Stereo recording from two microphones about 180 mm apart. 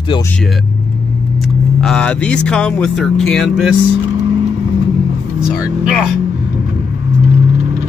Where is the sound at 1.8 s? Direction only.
5° left (ahead or behind).